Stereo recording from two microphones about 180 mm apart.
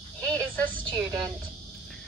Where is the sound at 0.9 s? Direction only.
20° right (ahead or behind).